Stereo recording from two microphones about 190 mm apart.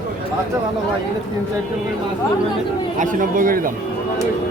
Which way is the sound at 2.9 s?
45° right (ahead or behind).